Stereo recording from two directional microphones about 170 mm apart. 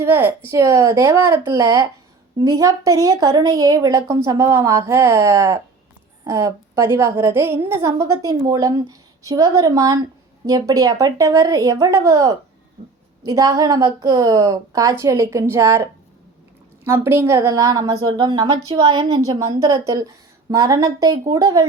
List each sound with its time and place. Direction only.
0.0 s a woman's voice: 15° right (ahead or behind)